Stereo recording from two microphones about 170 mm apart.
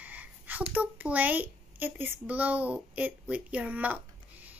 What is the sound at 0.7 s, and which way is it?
A child's voice, 10° right (ahead or behind).